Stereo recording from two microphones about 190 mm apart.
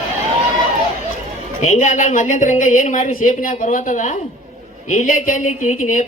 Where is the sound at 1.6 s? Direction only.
40° left (ahead or behind).